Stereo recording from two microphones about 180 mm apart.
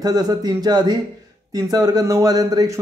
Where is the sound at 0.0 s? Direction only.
20° right (ahead or behind).